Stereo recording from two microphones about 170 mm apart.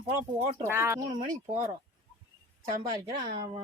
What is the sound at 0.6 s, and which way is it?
Speech, 15° right (ahead or behind).